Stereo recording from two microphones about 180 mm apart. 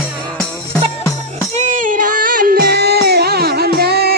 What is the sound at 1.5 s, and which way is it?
Music, 45° right (ahead or behind).